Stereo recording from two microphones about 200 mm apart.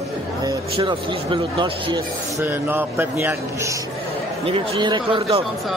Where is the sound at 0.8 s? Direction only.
25° right (ahead or behind).